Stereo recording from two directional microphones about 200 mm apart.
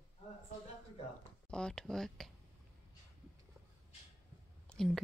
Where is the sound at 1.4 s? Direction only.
5° left (ahead or behind).